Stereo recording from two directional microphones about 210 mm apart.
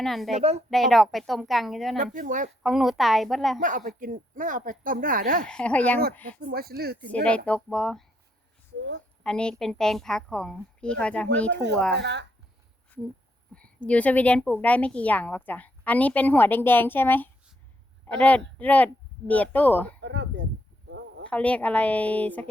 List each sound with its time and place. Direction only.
0.0 s a woman's voice: centre (ahead or behind)
0.3 s speech: 30° right (ahead or behind)
0.7 s a woman's voice: centre (ahead or behind)
2.1 s speech: 40° right (ahead or behind)
2.6 s a woman's voice: centre (ahead or behind)
3.6 s speech: 40° right (ahead or behind)
5.5 s a woman's voice: 5° left (ahead or behind)
6.4 s speech: 45° right (ahead or behind)
7.1 s a woman's voice: 5° left (ahead or behind)
9.2 s a woman's voice: 5° left (ahead or behind)
11.9 s speech: 55° right (ahead or behind)
13.8 s a woman's voice: 5° left (ahead or behind)
20.0 s speech: 60° right (ahead or behind)
21.2 s a woman's voice: 5° left (ahead or behind)